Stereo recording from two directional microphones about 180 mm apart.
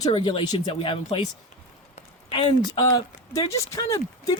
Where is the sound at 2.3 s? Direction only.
30° left (ahead or behind).